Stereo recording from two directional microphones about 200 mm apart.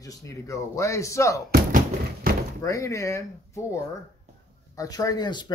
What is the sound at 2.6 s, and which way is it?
Speech, 15° left (ahead or behind).